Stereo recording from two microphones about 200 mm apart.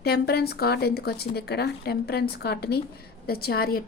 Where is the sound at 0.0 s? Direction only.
55° left (ahead or behind).